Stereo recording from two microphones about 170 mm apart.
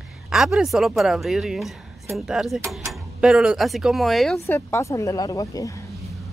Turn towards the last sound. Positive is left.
turn(degrees=20)  # may be behind; listen again after turning